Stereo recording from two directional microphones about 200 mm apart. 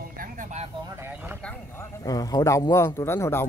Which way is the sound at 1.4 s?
10° left (ahead or behind).